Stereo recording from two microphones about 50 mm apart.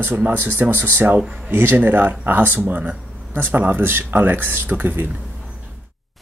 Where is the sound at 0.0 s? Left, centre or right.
Right.